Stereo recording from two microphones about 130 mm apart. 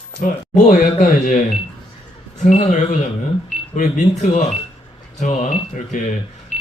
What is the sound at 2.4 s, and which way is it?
Speech, 65° left (ahead or behind).